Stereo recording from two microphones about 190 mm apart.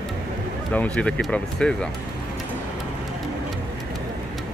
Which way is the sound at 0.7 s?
5° left (ahead or behind).